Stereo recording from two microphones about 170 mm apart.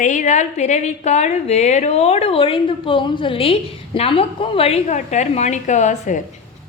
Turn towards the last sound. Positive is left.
turn(degrees=45)  # may be behind; listen again after turning